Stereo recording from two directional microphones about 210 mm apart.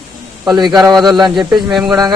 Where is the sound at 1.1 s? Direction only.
20° right (ahead or behind).